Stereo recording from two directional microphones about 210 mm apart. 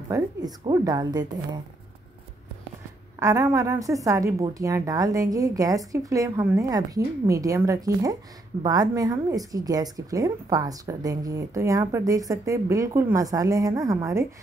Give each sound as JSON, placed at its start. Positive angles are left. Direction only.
{"t": 0.1, "sound": "a woman's voice", "side_deg": -20}
{"t": 3.2, "sound": "speech", "side_deg": -15}